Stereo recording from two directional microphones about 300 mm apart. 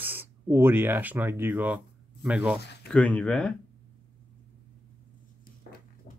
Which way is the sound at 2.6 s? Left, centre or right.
Left.